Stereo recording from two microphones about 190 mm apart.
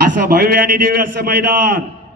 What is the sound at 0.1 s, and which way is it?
Speech, 45° right (ahead or behind).